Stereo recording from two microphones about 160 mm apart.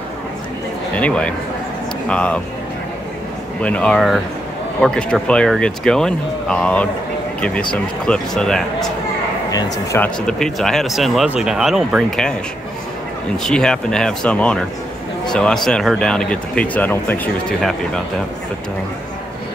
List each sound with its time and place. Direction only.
0.9 s speech: 5° left (ahead or behind)
3.6 s speech: 5° left (ahead or behind)
9.9 s speech: 5° left (ahead or behind)
13.4 s speech: 5° left (ahead or behind)